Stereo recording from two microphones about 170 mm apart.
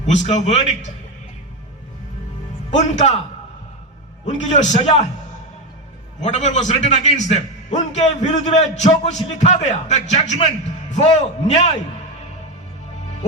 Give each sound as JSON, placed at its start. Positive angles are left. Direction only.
{"t": 0.0, "sound": "a man's voice", "side_deg": 40}
{"t": 2.6, "sound": "a man's voice", "side_deg": 45}
{"t": 4.5, "sound": "a man's voice", "side_deg": 40}
{"t": 6.2, "sound": "a man's voice", "side_deg": 40}